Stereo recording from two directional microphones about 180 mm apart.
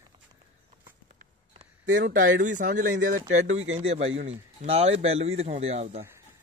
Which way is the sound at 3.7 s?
35° right (ahead or behind).